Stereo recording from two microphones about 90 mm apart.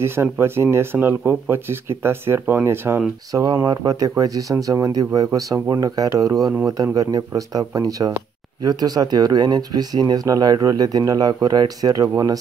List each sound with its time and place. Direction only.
0.0 s speech: 30° right (ahead or behind)
3.3 s speech: 45° right (ahead or behind)